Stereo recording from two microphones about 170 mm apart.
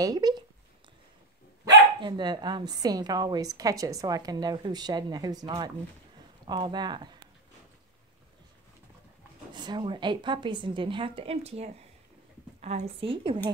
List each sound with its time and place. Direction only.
0.0 s speech: 25° right (ahead or behind)
2.0 s a woman's voice: 25° right (ahead or behind)
9.5 s a woman's voice: 25° right (ahead or behind)